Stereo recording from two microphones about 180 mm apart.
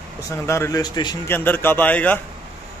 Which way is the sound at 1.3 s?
10° left (ahead or behind).